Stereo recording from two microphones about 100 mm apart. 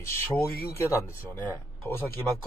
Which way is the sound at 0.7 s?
30° left (ahead or behind).